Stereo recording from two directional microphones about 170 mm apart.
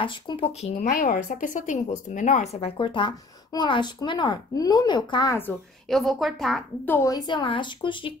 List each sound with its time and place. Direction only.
0.0 s speech: 30° left (ahead or behind)
0.8 s speech: 55° left (ahead or behind); by 5.5 s 20° left (ahead or behind)
5.9 s a woman's voice: centre (ahead or behind)
6.9 s speech: 20° left (ahead or behind)